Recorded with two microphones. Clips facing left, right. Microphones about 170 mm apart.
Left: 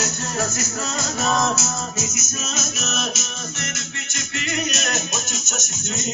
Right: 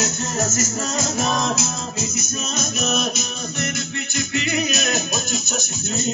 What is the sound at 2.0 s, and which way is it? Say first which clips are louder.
Music: right 2 dB; 30° right (ahead or behind).